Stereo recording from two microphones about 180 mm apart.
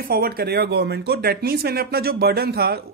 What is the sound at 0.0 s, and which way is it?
Speech, 55° right (ahead or behind).